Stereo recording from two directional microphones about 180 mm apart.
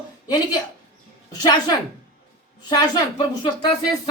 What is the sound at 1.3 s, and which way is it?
Speech, 20° left (ahead or behind).